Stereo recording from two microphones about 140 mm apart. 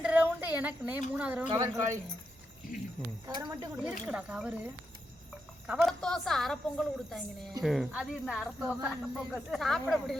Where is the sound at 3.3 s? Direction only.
30° right (ahead or behind).